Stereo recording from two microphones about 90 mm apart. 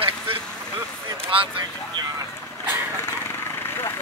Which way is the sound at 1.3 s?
85° right.